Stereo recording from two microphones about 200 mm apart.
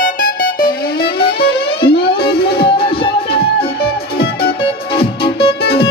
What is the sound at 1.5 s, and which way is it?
Music, 25° left (ahead or behind).